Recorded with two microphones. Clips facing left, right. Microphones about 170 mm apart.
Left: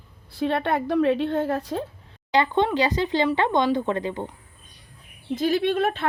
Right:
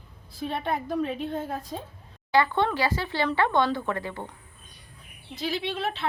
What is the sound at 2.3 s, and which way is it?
Speech, 20° left (ahead or behind).